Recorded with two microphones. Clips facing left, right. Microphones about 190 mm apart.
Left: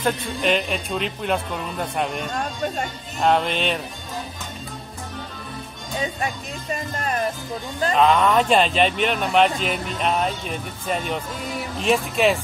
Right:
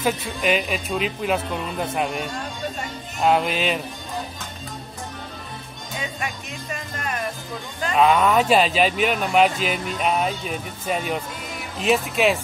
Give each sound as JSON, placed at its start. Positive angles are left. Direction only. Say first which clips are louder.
{"t": 0.0, "sound": "speech", "louder": "even", "side_deg": -5}
{"t": 5.9, "sound": "speech", "louder": "left 4 dB", "side_deg": 35}
{"t": 7.9, "sound": "speech", "louder": "even", "side_deg": -5}